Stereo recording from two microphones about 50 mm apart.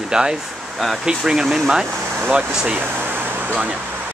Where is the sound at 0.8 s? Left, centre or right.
Centre.